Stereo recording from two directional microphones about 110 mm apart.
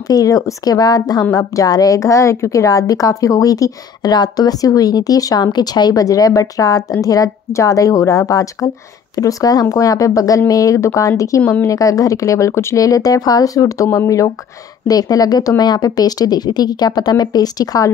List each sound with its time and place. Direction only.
0.1 s a woman's voice: 30° left (ahead or behind)